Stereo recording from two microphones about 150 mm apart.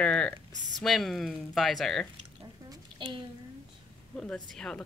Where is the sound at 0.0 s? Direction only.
5° left (ahead or behind).